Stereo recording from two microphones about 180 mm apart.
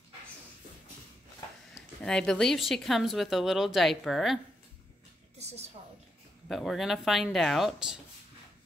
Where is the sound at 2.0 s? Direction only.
5° left (ahead or behind).